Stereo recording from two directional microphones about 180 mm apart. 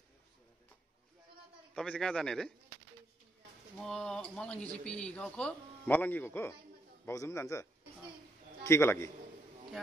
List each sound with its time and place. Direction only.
1.7 s speech: 5° left (ahead or behind)
3.7 s a man's voice: 5° left (ahead or behind)
8.6 s a man's voice: 15° left (ahead or behind)